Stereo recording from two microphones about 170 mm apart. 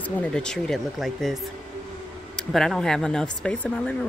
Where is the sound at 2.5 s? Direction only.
Centre (ahead or behind).